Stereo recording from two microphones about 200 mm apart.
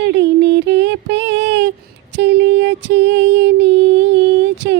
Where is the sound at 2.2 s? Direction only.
60° right (ahead or behind).